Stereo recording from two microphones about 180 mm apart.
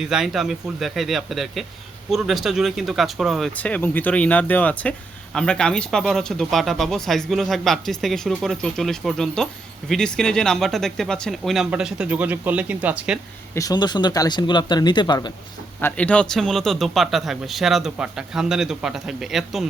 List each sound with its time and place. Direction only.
0.0 s speech: 5° right (ahead or behind)
13.5 s speech: 20° left (ahead or behind)
15.8 s speech: 5° left (ahead or behind)